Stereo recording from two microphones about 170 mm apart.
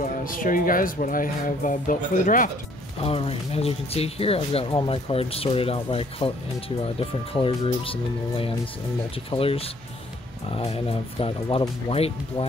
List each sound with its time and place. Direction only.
0.0 s speech: 55° left (ahead or behind)
3.0 s speech: 35° left (ahead or behind)